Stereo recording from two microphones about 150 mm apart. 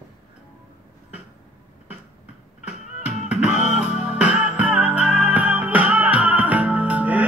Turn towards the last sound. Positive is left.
turn(degrees=-10)  # may be behind; listen again after turning